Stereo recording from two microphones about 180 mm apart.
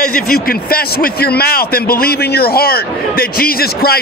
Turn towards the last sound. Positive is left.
turn(degrees=55)  # may be behind; listen again after turning